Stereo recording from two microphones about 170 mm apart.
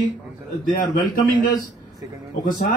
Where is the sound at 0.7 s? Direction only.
55° left (ahead or behind).